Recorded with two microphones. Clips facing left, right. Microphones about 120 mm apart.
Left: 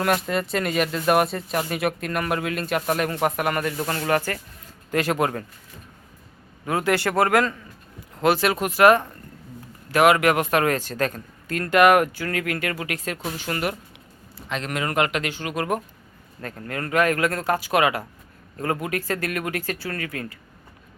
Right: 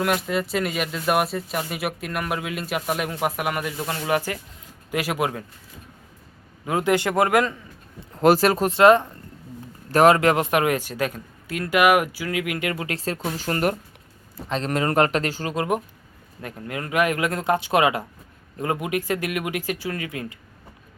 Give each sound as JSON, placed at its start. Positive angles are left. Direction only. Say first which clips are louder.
{"t": 0.0, "sound": "speech", "louder": "even", "side_deg": -5}
{"t": 6.7, "sound": "speech", "louder": "right 1 dB", "side_deg": -15}
{"t": 8.2, "sound": "speech", "louder": "right 3 dB", "side_deg": -40}
{"t": 9.9, "sound": "speech", "louder": "right 1 dB", "side_deg": -35}
{"t": 15.5, "sound": "speech", "louder": "even", "side_deg": -20}